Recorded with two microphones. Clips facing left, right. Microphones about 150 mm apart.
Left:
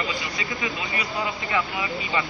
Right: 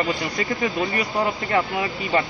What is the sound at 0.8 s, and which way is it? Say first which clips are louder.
Speech: right 6 dB; 35° right (ahead or behind).